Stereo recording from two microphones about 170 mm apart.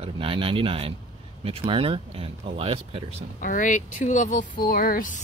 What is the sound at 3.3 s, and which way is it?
Speech, 50° left (ahead or behind).